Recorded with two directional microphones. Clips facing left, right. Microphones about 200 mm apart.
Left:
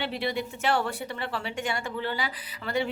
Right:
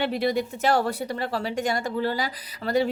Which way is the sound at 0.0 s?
45° right (ahead or behind).